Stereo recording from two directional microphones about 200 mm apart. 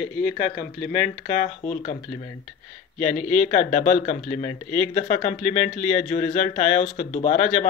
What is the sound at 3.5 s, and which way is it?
Speech, 35° left (ahead or behind).